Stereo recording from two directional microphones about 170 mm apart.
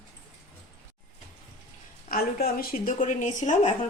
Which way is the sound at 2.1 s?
60° left (ahead or behind).